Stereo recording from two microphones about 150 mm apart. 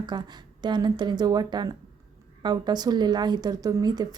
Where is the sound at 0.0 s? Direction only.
30° right (ahead or behind).